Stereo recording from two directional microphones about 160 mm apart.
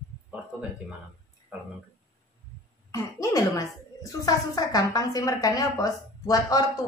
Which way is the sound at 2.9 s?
20° left (ahead or behind).